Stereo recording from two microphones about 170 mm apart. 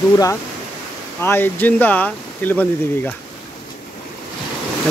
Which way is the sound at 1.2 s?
10° left (ahead or behind).